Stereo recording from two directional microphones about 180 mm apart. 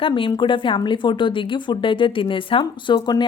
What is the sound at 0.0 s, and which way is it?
Speech, 30° left (ahead or behind).